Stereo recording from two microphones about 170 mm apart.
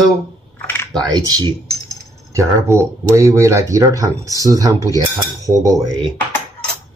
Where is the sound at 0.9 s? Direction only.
25° right (ahead or behind).